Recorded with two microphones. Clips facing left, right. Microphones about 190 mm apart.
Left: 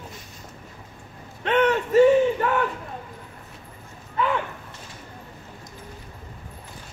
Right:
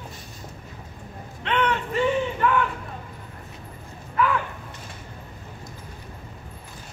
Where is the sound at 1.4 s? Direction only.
45° left (ahead or behind).